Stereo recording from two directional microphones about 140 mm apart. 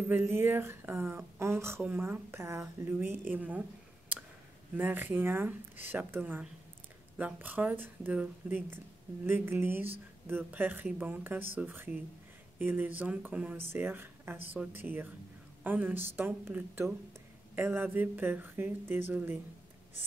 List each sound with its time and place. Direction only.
0.0 s speech: 15° right (ahead or behind)
4.7 s speech: 15° right (ahead or behind)